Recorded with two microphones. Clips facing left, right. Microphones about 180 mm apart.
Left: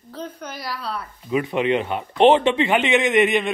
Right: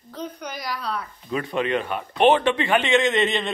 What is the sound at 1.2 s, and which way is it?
Speech, 20° left (ahead or behind).